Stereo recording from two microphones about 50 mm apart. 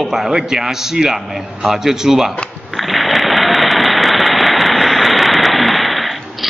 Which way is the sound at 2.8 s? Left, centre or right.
Centre.